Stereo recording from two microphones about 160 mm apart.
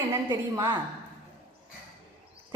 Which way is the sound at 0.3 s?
25° right (ahead or behind).